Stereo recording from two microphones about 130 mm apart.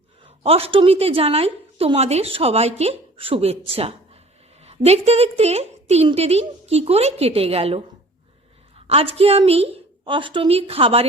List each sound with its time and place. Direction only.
0.3 s a woman's voice: 50° right (ahead or behind)
8.9 s a woman's voice: 50° right (ahead or behind)